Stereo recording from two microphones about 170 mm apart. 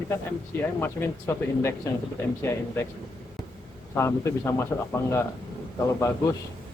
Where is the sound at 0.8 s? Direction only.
15° left (ahead or behind).